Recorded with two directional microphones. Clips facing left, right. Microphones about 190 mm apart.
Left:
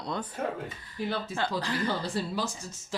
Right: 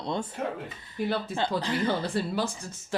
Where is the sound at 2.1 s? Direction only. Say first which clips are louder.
Right 3 dB; 55° right (ahead or behind).